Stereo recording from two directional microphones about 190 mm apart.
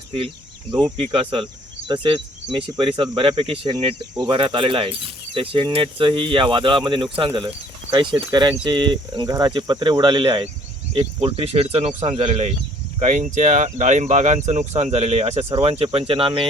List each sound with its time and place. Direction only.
0.9 s speech: 30° right (ahead or behind)